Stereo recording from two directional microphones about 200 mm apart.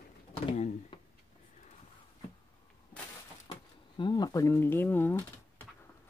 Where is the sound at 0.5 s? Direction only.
25° left (ahead or behind).